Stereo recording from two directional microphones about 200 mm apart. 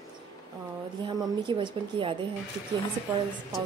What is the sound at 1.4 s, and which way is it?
Speech, 25° right (ahead or behind).